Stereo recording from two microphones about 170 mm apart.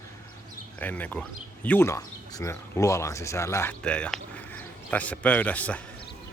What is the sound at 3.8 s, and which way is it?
Speech, 5° left (ahead or behind).